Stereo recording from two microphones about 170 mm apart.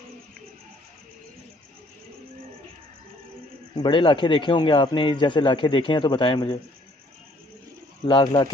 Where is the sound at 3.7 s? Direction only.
30° left (ahead or behind).